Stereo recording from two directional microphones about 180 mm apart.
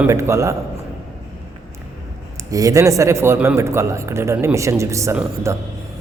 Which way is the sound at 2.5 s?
20° right (ahead or behind).